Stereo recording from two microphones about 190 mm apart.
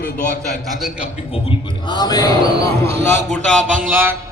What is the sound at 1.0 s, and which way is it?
A man's voice, 30° left (ahead or behind).